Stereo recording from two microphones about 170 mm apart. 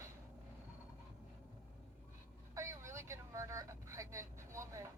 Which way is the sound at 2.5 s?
15° right (ahead or behind).